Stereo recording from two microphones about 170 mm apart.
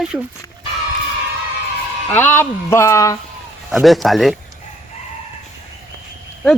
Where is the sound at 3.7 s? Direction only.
Centre (ahead or behind).